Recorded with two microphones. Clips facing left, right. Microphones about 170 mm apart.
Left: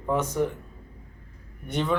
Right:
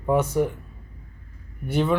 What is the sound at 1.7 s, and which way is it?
Speech, 5° right (ahead or behind).